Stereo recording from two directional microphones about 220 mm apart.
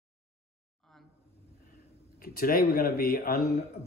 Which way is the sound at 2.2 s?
40° left (ahead or behind).